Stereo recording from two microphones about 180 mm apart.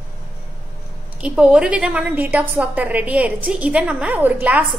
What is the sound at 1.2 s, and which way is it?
A woman's voice, 5° right (ahead or behind).